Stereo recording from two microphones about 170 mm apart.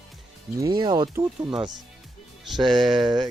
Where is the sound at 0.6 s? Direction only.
25° right (ahead or behind).